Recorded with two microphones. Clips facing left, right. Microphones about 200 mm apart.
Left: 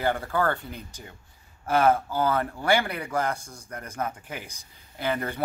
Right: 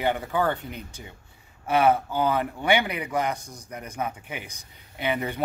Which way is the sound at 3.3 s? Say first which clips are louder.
Right 1 dB; 30° left (ahead or behind).